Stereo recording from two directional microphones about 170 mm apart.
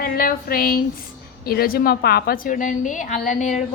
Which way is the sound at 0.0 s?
60° left (ahead or behind).